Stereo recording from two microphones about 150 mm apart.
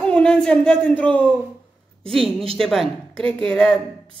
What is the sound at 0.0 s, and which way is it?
Speech, 5° left (ahead or behind).